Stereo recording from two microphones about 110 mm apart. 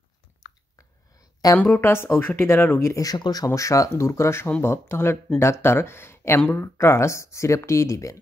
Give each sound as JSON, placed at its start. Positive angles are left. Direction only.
{"t": 1.7, "sound": "speech", "side_deg": 20}